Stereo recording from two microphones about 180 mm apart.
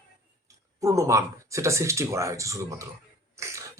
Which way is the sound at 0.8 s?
15° right (ahead or behind).